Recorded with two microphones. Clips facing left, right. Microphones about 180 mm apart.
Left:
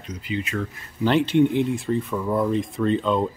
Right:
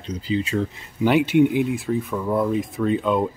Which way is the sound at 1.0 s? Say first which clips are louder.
Right 2 dB; 10° right (ahead or behind).